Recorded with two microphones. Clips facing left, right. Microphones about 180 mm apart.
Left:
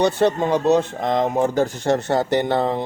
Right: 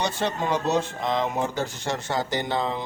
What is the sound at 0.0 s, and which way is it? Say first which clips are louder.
Speech: left 9 dB; 60° left (ahead or behind).